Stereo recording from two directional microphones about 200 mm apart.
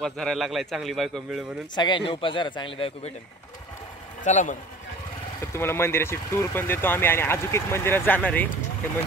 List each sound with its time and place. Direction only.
0.0 s a man's voice: centre (ahead or behind)
1.8 s a man's voice: 25° left (ahead or behind)
4.2 s speech: 40° left (ahead or behind)
5.4 s speech: 10° left (ahead or behind)